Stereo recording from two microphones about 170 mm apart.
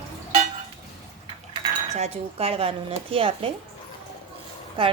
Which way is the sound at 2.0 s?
35° right (ahead or behind).